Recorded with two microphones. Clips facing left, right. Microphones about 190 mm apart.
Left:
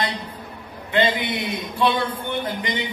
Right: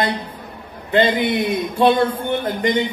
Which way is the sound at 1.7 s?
45° right (ahead or behind).